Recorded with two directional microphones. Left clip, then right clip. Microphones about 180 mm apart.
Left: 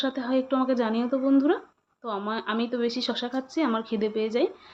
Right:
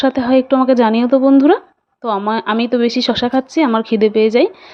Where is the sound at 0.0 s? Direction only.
45° right (ahead or behind).